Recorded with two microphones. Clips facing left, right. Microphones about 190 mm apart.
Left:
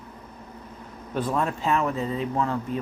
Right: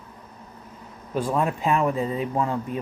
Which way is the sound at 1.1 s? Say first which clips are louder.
Right 2 dB; 10° right (ahead or behind).